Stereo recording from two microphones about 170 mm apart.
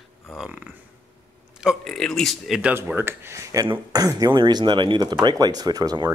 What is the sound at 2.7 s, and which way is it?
Speech, 15° right (ahead or behind).